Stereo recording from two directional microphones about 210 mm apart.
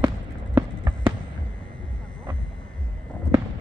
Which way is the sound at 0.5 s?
10° right (ahead or behind).